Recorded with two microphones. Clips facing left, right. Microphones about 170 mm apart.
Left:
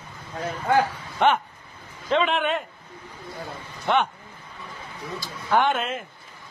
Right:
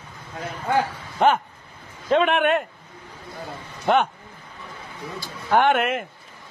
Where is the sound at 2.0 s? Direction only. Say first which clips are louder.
Right 4 dB; 55° right (ahead or behind).